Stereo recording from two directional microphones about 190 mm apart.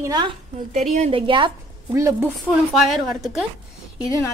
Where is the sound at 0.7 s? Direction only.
35° right (ahead or behind).